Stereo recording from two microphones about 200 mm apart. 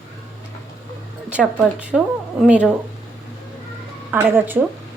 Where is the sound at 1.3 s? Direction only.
5° right (ahead or behind).